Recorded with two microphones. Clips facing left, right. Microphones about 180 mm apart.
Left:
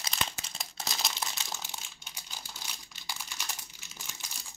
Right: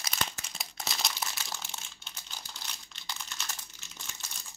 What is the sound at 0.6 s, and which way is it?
Crumpling, centre (ahead or behind).